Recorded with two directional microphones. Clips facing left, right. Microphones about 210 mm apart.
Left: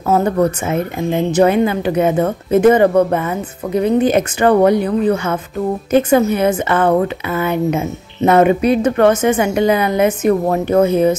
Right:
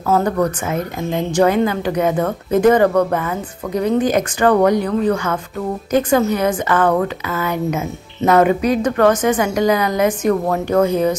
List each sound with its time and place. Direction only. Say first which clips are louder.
0.1 s a woman's voice: left 2 dB; 25° left (ahead or behind)